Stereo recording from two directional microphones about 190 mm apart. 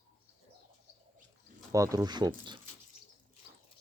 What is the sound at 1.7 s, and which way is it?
Speech, 20° right (ahead or behind).